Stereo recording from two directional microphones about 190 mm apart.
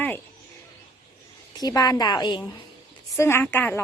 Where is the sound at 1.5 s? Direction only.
20° left (ahead or behind).